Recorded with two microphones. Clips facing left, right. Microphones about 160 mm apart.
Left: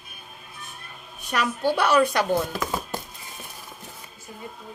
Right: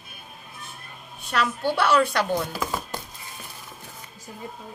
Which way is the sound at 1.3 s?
15° left (ahead or behind).